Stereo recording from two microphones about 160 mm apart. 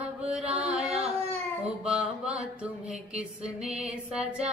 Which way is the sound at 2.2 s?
5° right (ahead or behind).